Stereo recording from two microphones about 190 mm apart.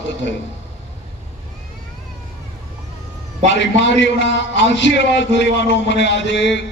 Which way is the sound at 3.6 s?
70° left (ahead or behind).